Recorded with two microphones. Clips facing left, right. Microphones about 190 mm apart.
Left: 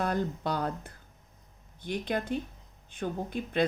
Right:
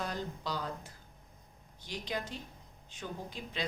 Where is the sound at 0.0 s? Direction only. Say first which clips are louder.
Left 8 dB; 55° left (ahead or behind).